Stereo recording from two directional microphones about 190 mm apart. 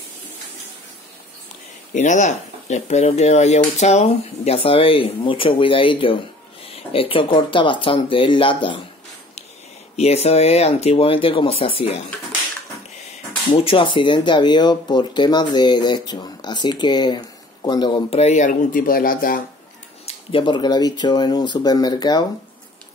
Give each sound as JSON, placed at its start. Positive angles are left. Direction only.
{"t": 2.0, "sound": "speech", "side_deg": 40}
{"t": 9.9, "sound": "speech", "side_deg": 35}
{"t": 13.5, "sound": "speech", "side_deg": 25}
{"t": 20.1, "sound": "speech", "side_deg": 30}